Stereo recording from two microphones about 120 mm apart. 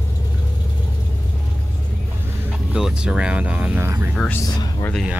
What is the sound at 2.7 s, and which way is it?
Speech, 10° right (ahead or behind).